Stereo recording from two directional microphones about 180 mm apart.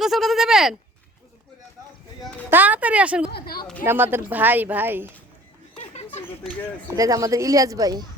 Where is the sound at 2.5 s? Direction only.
10° right (ahead or behind).